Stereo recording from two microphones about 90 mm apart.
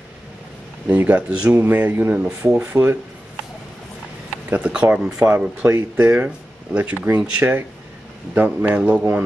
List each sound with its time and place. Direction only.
0.8 s speech: 20° right (ahead or behind)
4.5 s speech: 15° right (ahead or behind)
5.7 s speech: 25° right (ahead or behind)